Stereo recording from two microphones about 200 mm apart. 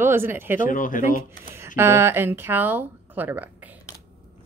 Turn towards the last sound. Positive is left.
turn(degrees=-10)  # may be behind; listen again after turning